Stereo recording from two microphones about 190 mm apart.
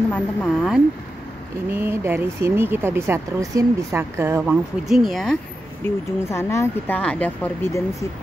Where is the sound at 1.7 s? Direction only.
10° right (ahead or behind).